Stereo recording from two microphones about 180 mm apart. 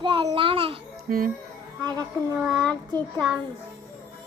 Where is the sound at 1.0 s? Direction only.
55° right (ahead or behind).